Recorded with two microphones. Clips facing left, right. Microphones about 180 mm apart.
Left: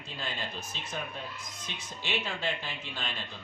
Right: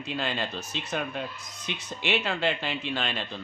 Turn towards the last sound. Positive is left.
turn(degrees=-75)  # may be behind; listen again after turning